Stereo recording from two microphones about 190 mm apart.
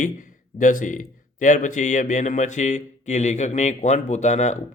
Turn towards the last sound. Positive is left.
turn(degrees=40)  # may be behind; listen again after turning